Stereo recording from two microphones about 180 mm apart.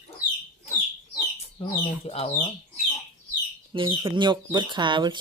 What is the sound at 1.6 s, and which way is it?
Speech, 35° left (ahead or behind).